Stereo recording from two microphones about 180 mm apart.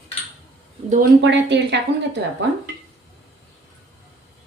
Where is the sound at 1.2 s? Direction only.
75° right (ahead or behind).